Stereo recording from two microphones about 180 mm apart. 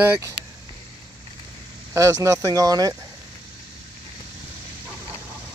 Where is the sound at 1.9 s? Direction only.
20° right (ahead or behind).